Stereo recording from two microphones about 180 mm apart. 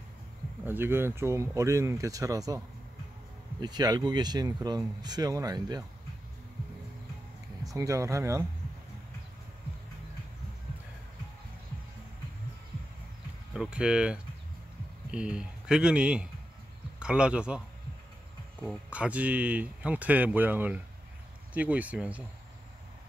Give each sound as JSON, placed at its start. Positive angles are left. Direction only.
{"t": 0.7, "sound": "speech", "side_deg": -10}
{"t": 3.6, "sound": "speech", "side_deg": -20}
{"t": 7.6, "sound": "speech", "side_deg": -20}
{"t": 13.6, "sound": "speech", "side_deg": -5}
{"t": 18.6, "sound": "speech", "side_deg": -5}